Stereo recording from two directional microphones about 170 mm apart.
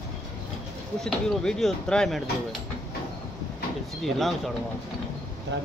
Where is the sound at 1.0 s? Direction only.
5° left (ahead or behind).